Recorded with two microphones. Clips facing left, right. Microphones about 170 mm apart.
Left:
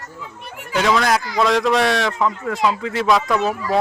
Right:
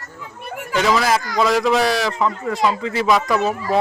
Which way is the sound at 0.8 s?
Centre (ahead or behind).